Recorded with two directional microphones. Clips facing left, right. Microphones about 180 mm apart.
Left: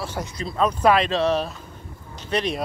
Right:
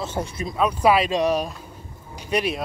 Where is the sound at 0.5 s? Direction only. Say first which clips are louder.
Even; 10° right (ahead or behind).